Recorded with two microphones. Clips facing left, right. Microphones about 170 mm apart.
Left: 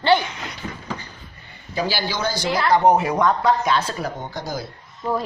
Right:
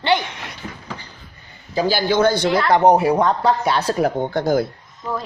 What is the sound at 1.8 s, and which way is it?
Speech, 55° right (ahead or behind).